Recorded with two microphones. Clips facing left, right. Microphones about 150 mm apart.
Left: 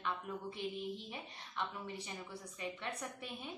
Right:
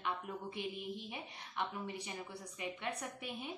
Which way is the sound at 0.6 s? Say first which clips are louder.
Left 1 dB; 15° right (ahead or behind).